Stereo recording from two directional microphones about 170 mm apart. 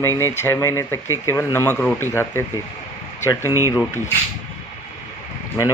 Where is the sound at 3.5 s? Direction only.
20° right (ahead or behind).